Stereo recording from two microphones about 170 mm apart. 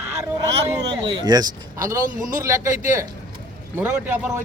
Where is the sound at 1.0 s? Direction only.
25° right (ahead or behind).